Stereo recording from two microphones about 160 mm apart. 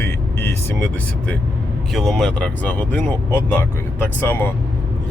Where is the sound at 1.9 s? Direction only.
Centre (ahead or behind).